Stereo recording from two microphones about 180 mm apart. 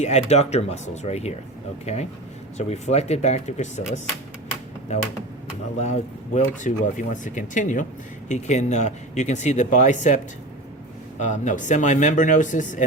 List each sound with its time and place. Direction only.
0.0 s speech: 40° left (ahead or behind)
11.2 s speech: 45° left (ahead or behind)